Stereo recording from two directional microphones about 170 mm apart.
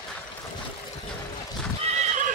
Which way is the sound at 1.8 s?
40° right (ahead or behind).